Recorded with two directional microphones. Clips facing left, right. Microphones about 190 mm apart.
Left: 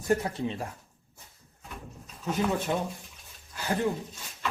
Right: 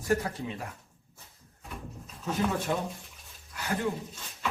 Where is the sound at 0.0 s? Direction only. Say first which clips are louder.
Left 2 dB; 25° left (ahead or behind).